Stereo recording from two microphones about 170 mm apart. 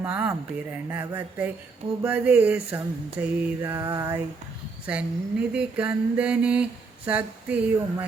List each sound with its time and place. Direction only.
0.0 s mantra: 10° right (ahead or behind)